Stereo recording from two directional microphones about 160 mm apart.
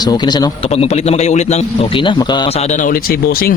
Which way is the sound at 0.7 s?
40° left (ahead or behind).